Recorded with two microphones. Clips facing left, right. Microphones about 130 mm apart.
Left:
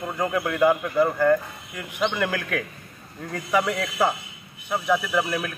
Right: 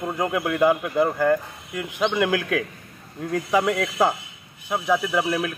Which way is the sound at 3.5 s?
25° right (ahead or behind).